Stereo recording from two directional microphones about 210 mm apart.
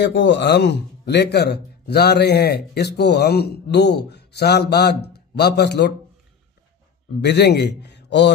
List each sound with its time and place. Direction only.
0.0 s speech: 60° left (ahead or behind)
7.2 s speech: 50° left (ahead or behind)